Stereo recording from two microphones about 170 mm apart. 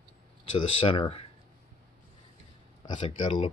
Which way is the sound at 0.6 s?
30° left (ahead or behind).